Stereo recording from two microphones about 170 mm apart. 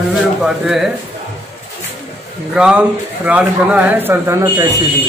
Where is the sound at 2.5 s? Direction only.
5° right (ahead or behind); by 4.8 s 20° right (ahead or behind).